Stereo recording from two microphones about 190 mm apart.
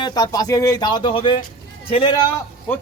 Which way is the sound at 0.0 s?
20° left (ahead or behind).